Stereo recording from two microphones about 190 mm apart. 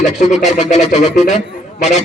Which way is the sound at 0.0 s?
40° left (ahead or behind).